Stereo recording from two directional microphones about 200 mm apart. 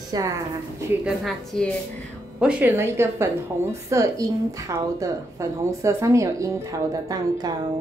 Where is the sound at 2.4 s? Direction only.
10° right (ahead or behind).